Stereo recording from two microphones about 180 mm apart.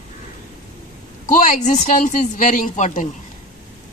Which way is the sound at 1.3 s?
45° left (ahead or behind).